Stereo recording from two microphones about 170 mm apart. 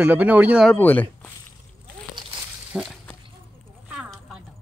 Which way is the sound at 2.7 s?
5° right (ahead or behind).